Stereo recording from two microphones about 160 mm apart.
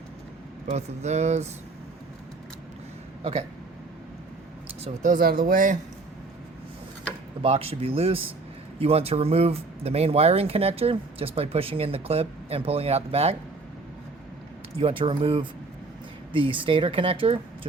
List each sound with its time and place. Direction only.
0.7 s speech: 45° right (ahead or behind)
4.8 s speech: 55° right (ahead or behind)
7.4 s speech: 40° right (ahead or behind)
14.8 s speech: 35° right (ahead or behind)